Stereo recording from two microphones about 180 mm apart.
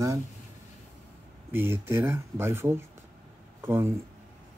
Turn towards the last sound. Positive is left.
turn(degrees=-15)  # may be behind; listen again after turning